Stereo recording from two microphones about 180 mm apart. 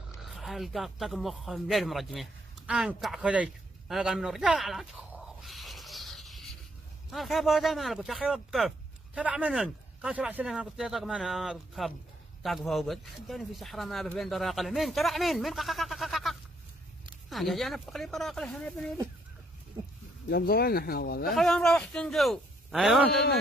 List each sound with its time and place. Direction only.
0.2 s speech: centre (ahead or behind)
5.4 s rub: centre (ahead or behind)
7.1 s speech: centre (ahead or behind)
20.2 s speech: 60° left (ahead or behind)
21.3 s speech: centre (ahead or behind)